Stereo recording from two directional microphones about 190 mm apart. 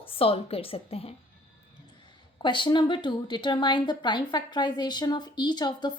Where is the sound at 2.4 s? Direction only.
25° left (ahead or behind).